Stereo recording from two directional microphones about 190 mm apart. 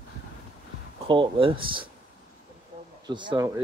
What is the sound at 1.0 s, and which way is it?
Speech, 25° right (ahead or behind).